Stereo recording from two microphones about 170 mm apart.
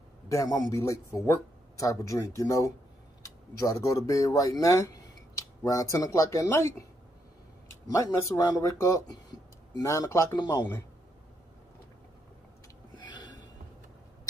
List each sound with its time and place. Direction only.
0.3 s speech: 20° left (ahead or behind)
7.8 s speech: 20° left (ahead or behind)
12.9 s a sound: 25° left (ahead or behind)